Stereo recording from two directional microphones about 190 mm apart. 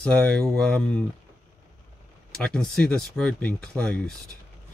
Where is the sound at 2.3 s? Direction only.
5° left (ahead or behind).